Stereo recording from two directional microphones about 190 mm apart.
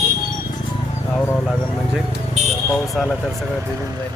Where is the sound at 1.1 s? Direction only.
10° left (ahead or behind).